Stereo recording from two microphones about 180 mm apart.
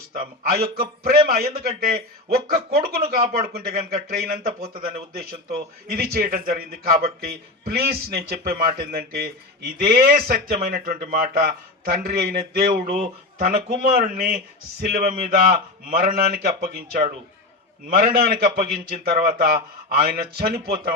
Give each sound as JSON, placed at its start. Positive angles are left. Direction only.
{"t": 0.1, "sound": "speech", "side_deg": -55}
{"t": 13.9, "sound": "a man's voice", "side_deg": -50}